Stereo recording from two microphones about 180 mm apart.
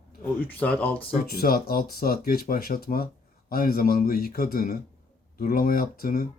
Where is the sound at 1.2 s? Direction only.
55° left (ahead or behind).